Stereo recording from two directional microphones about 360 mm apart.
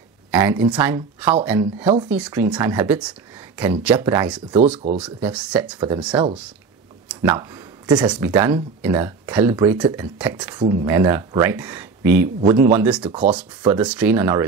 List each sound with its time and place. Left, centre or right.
0.3 s speech: centre
7.2 s speech: centre